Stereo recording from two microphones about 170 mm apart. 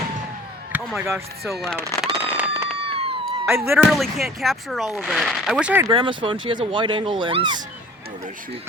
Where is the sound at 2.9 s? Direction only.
35° right (ahead or behind).